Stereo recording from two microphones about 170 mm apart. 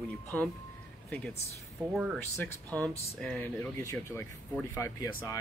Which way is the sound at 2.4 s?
10° left (ahead or behind).